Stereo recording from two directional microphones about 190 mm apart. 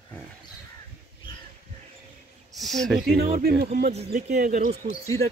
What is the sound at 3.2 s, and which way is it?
Speech, 50° right (ahead or behind).